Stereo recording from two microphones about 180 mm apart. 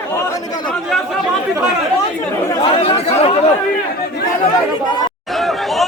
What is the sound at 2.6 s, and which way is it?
Chatter, 30° left (ahead or behind).